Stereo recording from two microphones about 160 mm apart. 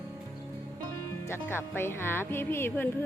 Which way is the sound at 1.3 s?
15° left (ahead or behind).